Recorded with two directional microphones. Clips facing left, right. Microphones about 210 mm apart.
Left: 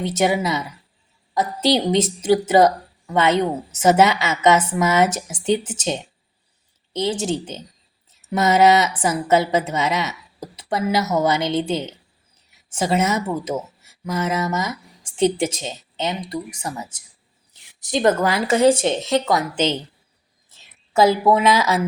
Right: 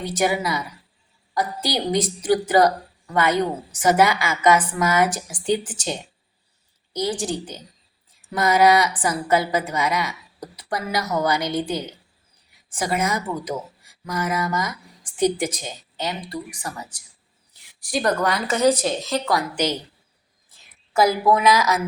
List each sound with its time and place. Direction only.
0.0 s a woman's voice: 25° left (ahead or behind)